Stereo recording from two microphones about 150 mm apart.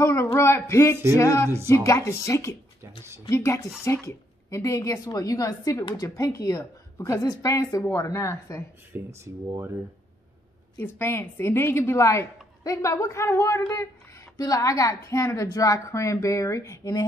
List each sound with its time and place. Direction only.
0.0 s a woman's voice: 20° left (ahead or behind)
8.9 s speech: 20° right (ahead or behind)
10.8 s a woman's voice: 15° left (ahead or behind)